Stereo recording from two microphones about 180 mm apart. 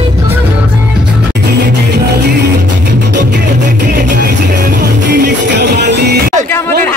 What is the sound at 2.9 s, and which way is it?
Music, 75° right (ahead or behind).